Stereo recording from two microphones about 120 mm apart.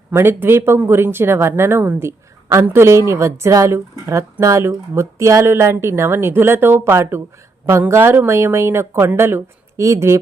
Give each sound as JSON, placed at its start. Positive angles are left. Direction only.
{"t": 0.1, "sound": "speech", "side_deg": -20}